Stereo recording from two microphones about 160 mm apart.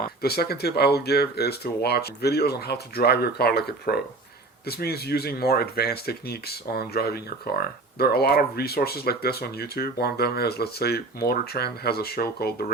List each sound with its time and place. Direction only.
0.0 s speech: 75° left (ahead or behind)